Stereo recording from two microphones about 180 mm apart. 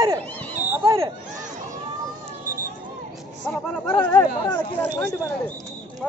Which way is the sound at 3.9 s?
10° left (ahead or behind).